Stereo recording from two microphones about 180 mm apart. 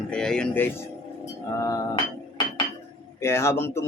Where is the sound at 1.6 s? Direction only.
20° left (ahead or behind).